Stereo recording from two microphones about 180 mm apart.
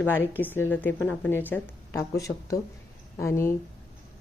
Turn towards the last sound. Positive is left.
turn(degrees=15)  # may be behind; listen again after turning